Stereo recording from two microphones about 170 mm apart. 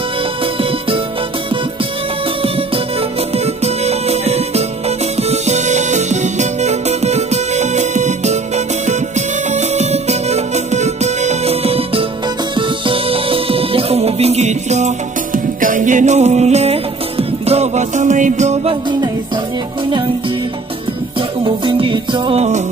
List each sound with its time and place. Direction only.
0.6 s music: 30° right (ahead or behind)
2.4 s music: 35° right (ahead or behind)
21.2 s music: 30° right (ahead or behind)